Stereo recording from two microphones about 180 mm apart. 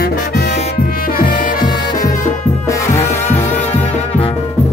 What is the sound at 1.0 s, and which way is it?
Music, 50° left (ahead or behind).